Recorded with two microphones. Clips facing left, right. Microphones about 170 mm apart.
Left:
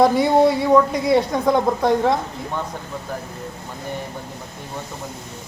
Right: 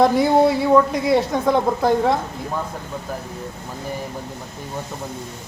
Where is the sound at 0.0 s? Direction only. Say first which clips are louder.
Even; centre (ahead or behind).